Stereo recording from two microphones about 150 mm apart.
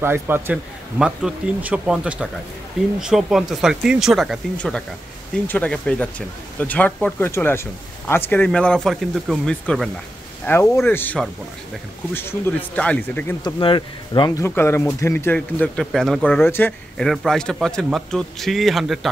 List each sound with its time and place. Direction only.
0.0 s a man's voice: 15° right (ahead or behind)
0.9 s speech: 5° right (ahead or behind)
10.4 s speech: 15° left (ahead or behind)
13.4 s speech: 30° left (ahead or behind)
14.4 s speech: 15° left (ahead or behind)
16.3 s speech: 15° left (ahead or behind)
16.9 s speech: centre (ahead or behind)